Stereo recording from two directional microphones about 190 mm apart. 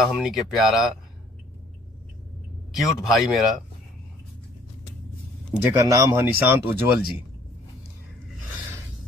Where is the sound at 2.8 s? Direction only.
Centre (ahead or behind).